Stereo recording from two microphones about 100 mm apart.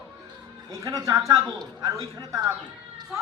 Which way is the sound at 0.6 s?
35° right (ahead or behind).